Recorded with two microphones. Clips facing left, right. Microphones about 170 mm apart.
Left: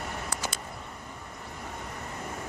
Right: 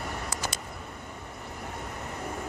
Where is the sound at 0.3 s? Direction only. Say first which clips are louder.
Even; 60° left (ahead or behind).